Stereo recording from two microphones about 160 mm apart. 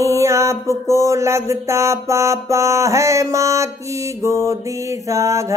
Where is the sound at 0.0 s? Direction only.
20° right (ahead or behind).